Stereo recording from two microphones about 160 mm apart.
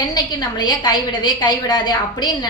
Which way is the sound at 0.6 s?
25° left (ahead or behind).